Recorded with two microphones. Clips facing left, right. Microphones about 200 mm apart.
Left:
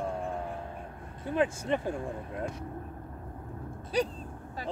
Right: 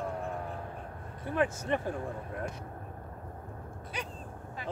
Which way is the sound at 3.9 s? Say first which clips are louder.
Left 13 dB; 35° left (ahead or behind).